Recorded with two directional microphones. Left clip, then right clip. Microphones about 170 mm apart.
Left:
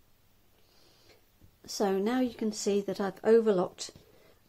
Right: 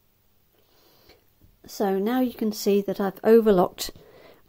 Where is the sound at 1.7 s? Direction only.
20° right (ahead or behind).